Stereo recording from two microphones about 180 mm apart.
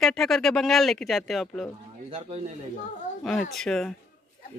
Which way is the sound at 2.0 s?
30° right (ahead or behind).